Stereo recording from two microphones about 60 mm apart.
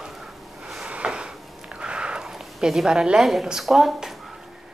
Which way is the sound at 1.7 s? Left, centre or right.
Centre.